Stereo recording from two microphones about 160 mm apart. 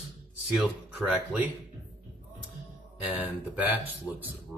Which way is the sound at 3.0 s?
10° right (ahead or behind).